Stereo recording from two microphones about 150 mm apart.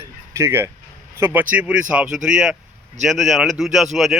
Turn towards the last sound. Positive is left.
turn(degrees=0)  # may be behind; listen again after turning